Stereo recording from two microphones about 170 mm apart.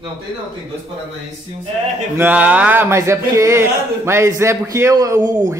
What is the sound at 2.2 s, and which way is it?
Speech, 10° right (ahead or behind).